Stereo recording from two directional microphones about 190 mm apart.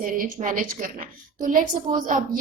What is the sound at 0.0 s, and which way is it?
A woman's voice, 45° right (ahead or behind).